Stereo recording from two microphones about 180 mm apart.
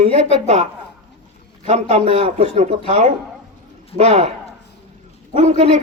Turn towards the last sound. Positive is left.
turn(degrees=-35)  # may be behind; listen again after turning